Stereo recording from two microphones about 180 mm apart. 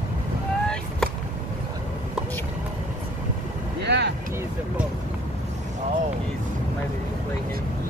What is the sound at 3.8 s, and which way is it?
Vehicle, 70° right (ahead or behind).